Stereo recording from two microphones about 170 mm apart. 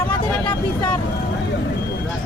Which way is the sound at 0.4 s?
25° left (ahead or behind).